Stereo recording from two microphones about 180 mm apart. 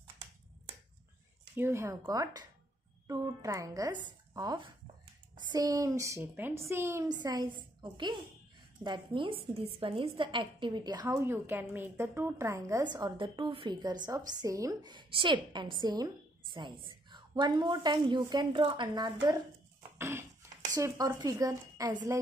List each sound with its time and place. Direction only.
1.5 s a woman's voice: 15° right (ahead or behind)
20.0 s a sound: 15° right (ahead or behind)
20.7 s a woman's voice: 20° right (ahead or behind)